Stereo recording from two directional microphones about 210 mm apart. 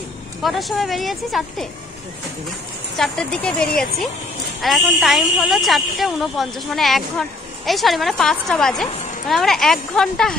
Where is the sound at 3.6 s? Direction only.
45° left (ahead or behind).